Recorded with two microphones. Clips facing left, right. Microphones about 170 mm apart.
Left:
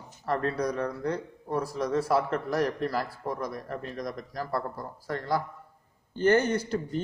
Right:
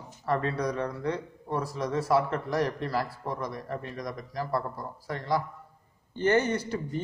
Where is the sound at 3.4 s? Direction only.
45° left (ahead or behind).